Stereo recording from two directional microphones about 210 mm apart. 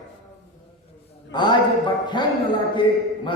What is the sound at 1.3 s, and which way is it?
Speech, 20° left (ahead or behind).